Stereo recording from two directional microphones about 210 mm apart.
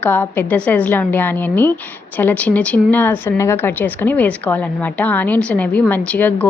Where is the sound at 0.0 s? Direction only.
10° left (ahead or behind).